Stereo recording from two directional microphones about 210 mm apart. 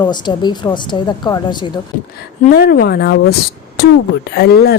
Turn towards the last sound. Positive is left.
turn(degrees=50)  # may be behind; listen again after turning